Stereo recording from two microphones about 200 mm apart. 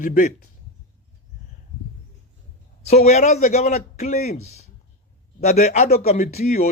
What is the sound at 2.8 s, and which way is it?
A man's voice, 35° left (ahead or behind).